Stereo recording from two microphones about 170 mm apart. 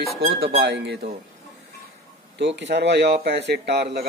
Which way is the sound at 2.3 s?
90° right.